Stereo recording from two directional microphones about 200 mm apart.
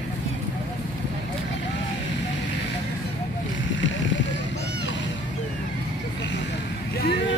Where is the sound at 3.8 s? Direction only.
65° left (ahead or behind).